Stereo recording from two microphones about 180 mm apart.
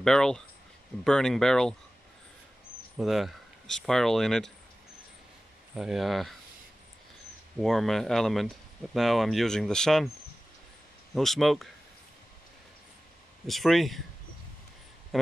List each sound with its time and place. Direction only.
0.0 s speech: 5° left (ahead or behind)
3.0 s speech: centre (ahead or behind)
5.8 s speech: centre (ahead or behind)
7.5 s speech: centre (ahead or behind)
11.1 s speech: centre (ahead or behind)
13.5 s speech: centre (ahead or behind)